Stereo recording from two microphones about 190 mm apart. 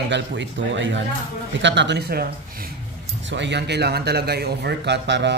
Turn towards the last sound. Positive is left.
turn(degrees=-65)  # may be behind; listen again after turning